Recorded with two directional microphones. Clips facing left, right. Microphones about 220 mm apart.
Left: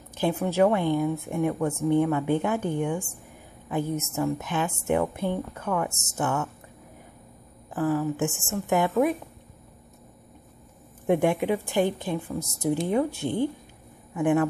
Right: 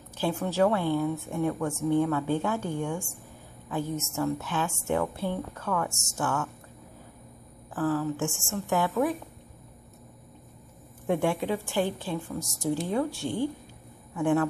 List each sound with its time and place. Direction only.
0.2 s a woman's voice: 15° left (ahead or behind)
7.7 s a woman's voice: 20° left (ahead or behind)
11.1 s a woman's voice: 15° left (ahead or behind)